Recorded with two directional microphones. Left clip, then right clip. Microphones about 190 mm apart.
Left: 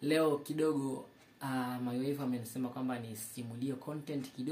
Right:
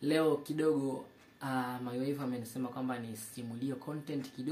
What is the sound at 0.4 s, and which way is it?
Speech, 20° left (ahead or behind).